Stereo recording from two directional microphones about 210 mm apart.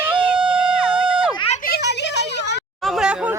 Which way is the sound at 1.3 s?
30° left (ahead or behind).